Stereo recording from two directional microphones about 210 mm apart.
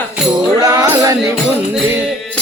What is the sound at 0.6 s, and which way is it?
Music, 15° right (ahead or behind).